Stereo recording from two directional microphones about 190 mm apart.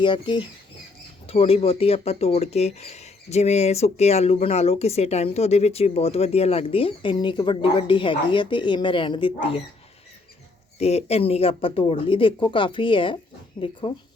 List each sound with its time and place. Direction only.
0.0 s speech: 25° left (ahead or behind)
10.8 s speech: 35° left (ahead or behind)